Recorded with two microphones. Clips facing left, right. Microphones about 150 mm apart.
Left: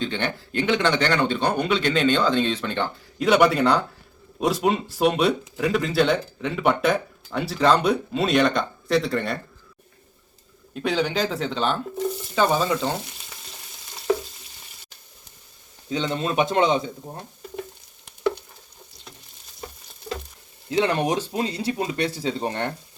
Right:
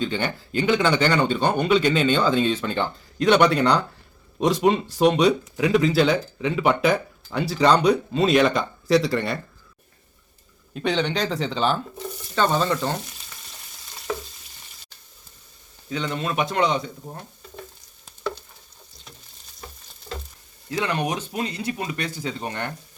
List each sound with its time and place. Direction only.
0.0 s speech: 5° right (ahead or behind)
10.8 s speech: centre (ahead or behind)
12.3 s frying: 10° left (ahead or behind)
15.9 s speech: 25° left (ahead or behind)
20.7 s speech: 30° left (ahead or behind)